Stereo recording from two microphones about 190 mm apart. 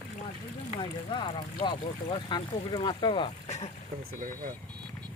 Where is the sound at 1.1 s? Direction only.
25° left (ahead or behind).